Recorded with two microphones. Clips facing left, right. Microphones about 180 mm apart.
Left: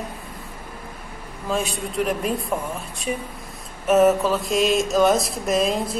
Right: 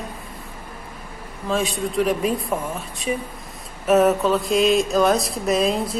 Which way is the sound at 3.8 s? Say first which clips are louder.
Even; centre (ahead or behind).